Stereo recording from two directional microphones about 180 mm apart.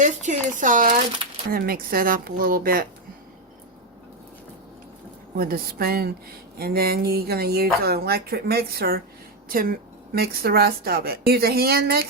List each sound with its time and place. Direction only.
0.0 s speech: 45° right (ahead or behind)
5.4 s speech: 55° right (ahead or behind)